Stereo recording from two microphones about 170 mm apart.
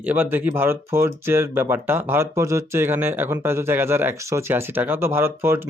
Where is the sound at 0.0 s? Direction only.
10° right (ahead or behind).